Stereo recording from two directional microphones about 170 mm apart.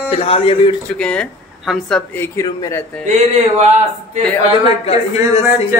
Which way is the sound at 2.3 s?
20° left (ahead or behind).